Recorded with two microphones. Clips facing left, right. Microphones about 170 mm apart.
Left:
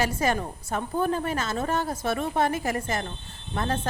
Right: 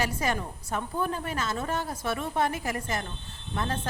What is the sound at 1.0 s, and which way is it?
Speech, 30° left (ahead or behind).